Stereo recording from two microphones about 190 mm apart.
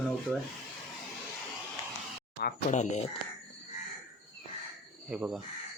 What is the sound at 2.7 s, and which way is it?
Speech, 40° left (ahead or behind).